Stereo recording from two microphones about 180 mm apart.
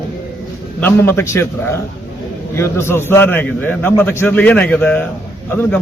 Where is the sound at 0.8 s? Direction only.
15° left (ahead or behind).